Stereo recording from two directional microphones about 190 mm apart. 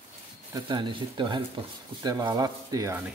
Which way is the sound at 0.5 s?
25° right (ahead or behind).